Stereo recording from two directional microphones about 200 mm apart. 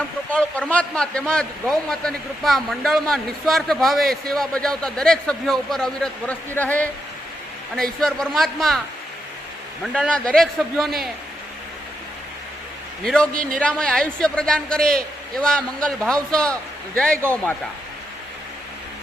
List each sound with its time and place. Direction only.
0.3 s a man's voice: 5° left (ahead or behind)
9.8 s a man's voice: centre (ahead or behind)
13.3 s speech: 45° right (ahead or behind)
13.6 s a man's voice: 5° left (ahead or behind)